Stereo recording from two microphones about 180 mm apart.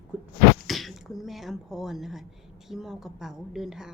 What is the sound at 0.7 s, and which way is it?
A woman's voice, centre (ahead or behind).